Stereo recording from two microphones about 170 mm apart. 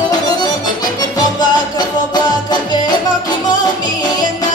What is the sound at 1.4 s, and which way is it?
Music, 25° left (ahead or behind).